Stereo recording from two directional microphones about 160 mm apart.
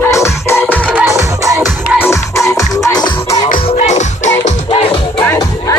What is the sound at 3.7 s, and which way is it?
Music, 45° left (ahead or behind).